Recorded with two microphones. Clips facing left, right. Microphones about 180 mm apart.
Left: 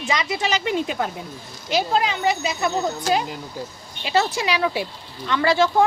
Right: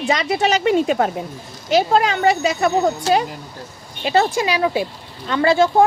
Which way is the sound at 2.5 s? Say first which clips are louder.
Right 6 dB; 70° right (ahead or behind).